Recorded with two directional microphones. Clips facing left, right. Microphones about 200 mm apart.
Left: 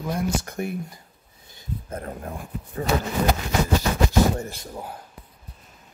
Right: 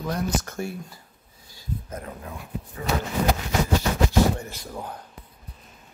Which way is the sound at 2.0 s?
45° left (ahead or behind).